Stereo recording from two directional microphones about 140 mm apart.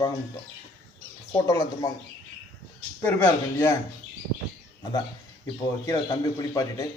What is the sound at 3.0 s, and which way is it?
Speech, 20° left (ahead or behind).